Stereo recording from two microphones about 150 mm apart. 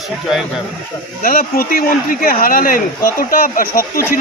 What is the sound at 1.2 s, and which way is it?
Speech, 75° left (ahead or behind).